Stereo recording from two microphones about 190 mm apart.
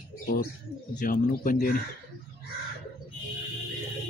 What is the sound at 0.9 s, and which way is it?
Speech, 45° left (ahead or behind).